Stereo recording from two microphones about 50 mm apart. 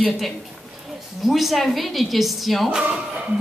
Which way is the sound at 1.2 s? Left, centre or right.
Centre.